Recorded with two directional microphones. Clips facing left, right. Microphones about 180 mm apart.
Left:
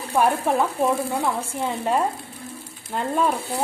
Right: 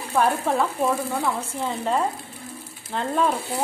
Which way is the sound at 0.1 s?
15° left (ahead or behind).